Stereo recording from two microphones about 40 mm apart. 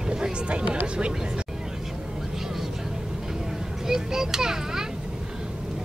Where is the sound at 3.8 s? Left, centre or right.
Centre.